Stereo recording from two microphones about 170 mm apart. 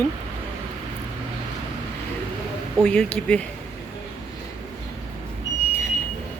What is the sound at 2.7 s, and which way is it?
Speech, 5° left (ahead or behind).